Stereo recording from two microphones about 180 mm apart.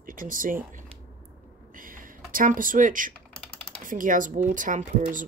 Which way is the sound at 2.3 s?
50° right (ahead or behind).